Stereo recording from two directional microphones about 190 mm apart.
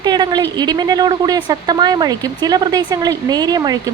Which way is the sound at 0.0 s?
25° right (ahead or behind).